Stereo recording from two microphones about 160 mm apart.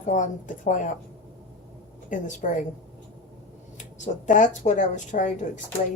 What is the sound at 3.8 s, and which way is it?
A woman's voice, 50° left (ahead or behind).